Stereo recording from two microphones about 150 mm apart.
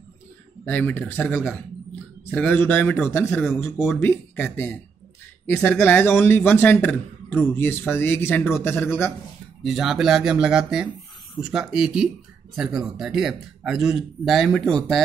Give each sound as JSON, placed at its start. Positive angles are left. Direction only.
{"t": 0.7, "sound": "a man's voice", "side_deg": 10}
{"t": 5.9, "sound": "a man's voice", "side_deg": 15}
{"t": 9.6, "sound": "speech", "side_deg": 0}